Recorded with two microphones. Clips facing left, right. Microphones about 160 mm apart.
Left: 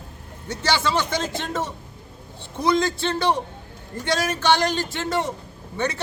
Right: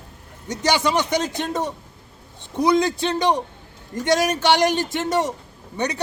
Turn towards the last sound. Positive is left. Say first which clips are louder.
# right 1 dB
turn(degrees=-15)  # may be behind; listen again after turning